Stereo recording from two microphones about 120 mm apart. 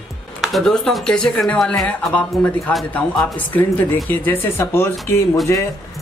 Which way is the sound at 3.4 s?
15° left (ahead or behind).